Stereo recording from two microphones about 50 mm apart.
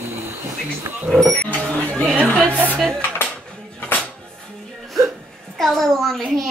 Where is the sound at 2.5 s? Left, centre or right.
Right.